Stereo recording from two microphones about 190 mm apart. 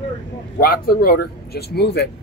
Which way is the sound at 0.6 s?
50° left (ahead or behind).